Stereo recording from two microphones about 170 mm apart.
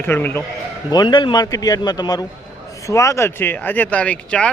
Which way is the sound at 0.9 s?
25° left (ahead or behind).